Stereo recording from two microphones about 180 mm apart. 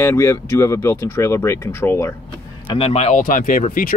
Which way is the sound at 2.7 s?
35° left (ahead or behind).